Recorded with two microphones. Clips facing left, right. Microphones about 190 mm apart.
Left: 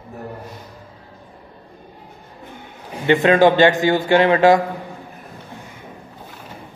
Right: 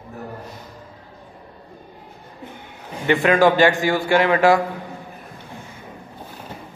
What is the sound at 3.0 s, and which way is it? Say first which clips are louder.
A man's voice: left 3 dB; 25° left (ahead or behind).